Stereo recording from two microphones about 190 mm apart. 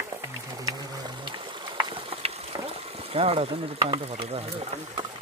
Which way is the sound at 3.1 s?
30° right (ahead or behind).